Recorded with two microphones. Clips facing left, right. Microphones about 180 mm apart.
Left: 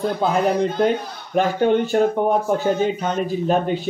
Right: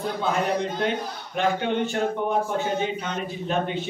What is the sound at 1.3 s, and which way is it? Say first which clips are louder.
A man's voice: left 6 dB; 40° left (ahead or behind).